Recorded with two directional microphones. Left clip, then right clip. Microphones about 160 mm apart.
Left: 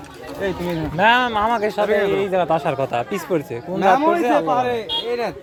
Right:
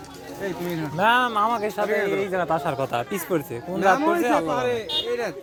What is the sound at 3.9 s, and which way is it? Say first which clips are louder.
Speech: left 5 dB; 55° left (ahead or behind).